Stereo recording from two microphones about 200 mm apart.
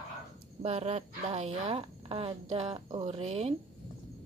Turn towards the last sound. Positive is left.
turn(degrees=-30)  # may be behind; listen again after turning